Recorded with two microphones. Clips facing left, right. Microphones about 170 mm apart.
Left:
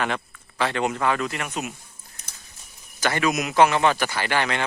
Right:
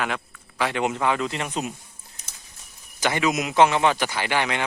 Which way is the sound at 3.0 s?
15° right (ahead or behind).